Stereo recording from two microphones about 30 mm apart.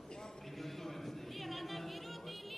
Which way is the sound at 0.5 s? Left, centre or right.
Centre.